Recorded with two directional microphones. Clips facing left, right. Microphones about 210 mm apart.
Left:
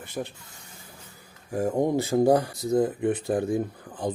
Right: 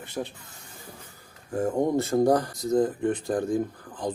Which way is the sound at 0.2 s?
Centre (ahead or behind).